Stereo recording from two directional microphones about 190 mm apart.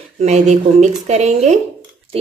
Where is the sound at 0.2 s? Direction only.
35° right (ahead or behind).